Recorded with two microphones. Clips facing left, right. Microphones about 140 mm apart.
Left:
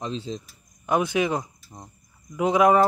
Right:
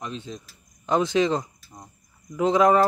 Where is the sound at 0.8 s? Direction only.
10° left (ahead or behind).